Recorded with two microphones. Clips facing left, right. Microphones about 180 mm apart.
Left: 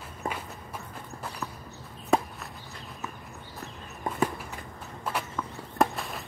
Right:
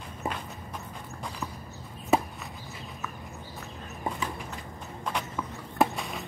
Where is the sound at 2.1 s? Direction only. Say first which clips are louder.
Even; 5° right (ahead or behind).